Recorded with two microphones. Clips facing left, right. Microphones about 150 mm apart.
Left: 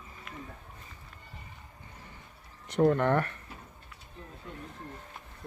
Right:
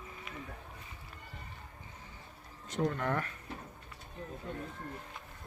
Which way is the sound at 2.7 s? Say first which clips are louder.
Left 8 dB; 60° left (ahead or behind).